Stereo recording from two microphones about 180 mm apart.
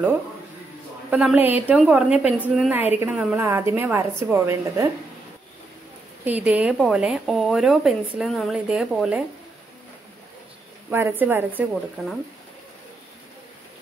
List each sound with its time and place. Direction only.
1.1 s a woman's voice: 5° right (ahead or behind)
6.2 s speech: 10° right (ahead or behind)
10.9 s a woman's voice: 10° right (ahead or behind)